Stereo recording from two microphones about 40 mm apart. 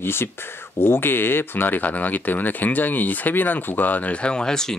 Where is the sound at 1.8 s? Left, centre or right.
Left.